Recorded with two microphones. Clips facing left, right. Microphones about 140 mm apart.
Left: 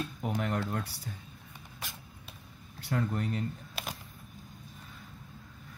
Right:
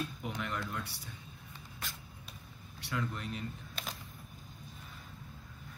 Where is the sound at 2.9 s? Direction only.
45° left (ahead or behind).